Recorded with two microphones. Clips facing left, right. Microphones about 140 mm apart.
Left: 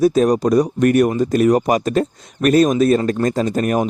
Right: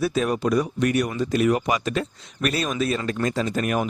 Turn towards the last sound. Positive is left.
turn(degrees=40)  # may be behind; listen again after turning